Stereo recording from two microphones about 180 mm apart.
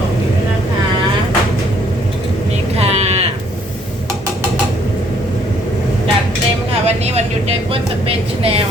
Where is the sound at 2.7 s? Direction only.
35° right (ahead or behind).